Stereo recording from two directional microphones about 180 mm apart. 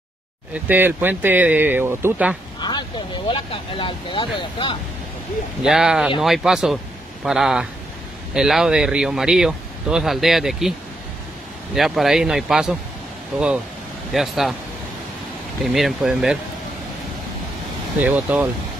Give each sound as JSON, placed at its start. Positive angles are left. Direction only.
{"t": 0.7, "sound": "speech", "side_deg": -10}
{"t": 3.3, "sound": "speech", "side_deg": 30}
{"t": 5.6, "sound": "speech", "side_deg": -5}
{"t": 11.7, "sound": "speech", "side_deg": 0}
{"t": 14.1, "sound": "speech", "side_deg": 0}
{"t": 15.6, "sound": "speech", "side_deg": 0}
{"t": 18.0, "sound": "speech", "side_deg": -10}